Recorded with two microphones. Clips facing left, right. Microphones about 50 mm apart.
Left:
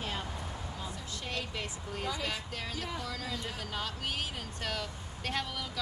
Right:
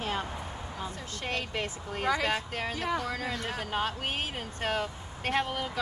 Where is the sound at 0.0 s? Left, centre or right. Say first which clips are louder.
Right 5 dB; right.